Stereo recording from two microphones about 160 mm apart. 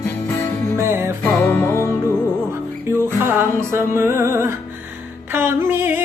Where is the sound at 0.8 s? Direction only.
15° right (ahead or behind).